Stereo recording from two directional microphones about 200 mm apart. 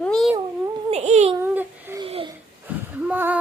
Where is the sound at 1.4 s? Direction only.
10° right (ahead or behind).